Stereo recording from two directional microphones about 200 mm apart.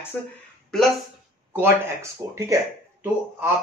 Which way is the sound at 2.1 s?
15° right (ahead or behind).